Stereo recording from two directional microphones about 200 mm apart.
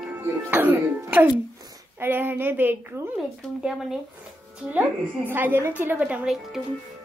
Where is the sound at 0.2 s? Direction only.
10° right (ahead or behind).